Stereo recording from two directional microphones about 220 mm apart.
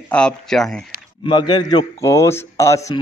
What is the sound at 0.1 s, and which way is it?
Speech, 5° left (ahead or behind).